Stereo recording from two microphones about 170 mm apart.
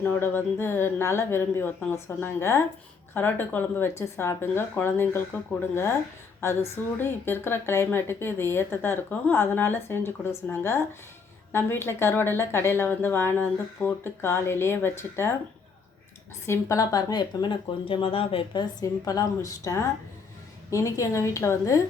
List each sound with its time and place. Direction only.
0.0 s a woman's voice: 10° left (ahead or behind)
16.5 s a woman's voice: 20° left (ahead or behind)